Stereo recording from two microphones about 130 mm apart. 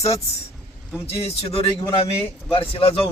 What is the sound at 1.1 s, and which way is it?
Speech, 50° left (ahead or behind).